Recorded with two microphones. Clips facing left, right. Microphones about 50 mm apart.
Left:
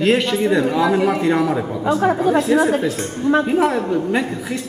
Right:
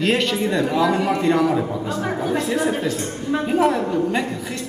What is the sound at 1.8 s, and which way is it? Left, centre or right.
Speech, left.